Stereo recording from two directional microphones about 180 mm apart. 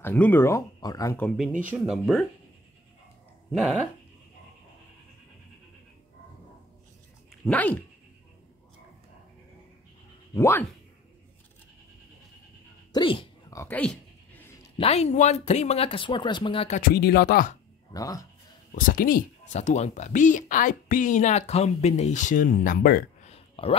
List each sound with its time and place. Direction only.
0.0 s speech: 10° left (ahead or behind)
1.7 s speech: centre (ahead or behind)
7.2 s speech: 5° left (ahead or behind)
10.3 s speech: 15° left (ahead or behind)
12.9 s a sound: 30° left (ahead or behind)
13.6 s a sound: 10° left (ahead or behind)
14.8 s speech: 35° left (ahead or behind)
16.8 s speech: 60° left (ahead or behind)
17.9 s speech: 20° left (ahead or behind)
18.8 s speech: 50° left (ahead or behind)
23.2 s a sound: 35° left (ahead or behind)